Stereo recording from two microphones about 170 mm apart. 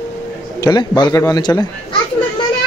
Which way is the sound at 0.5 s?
25° left (ahead or behind).